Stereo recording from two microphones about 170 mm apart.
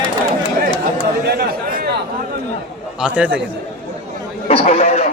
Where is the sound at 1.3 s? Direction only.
65° right (ahead or behind).